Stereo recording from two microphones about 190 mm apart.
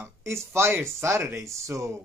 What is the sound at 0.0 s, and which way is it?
Speech, 15° right (ahead or behind).